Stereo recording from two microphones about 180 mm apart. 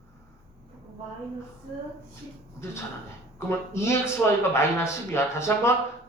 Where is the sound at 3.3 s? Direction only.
15° left (ahead or behind).